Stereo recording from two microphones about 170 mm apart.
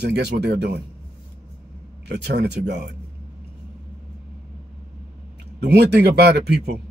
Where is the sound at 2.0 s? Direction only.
80° right.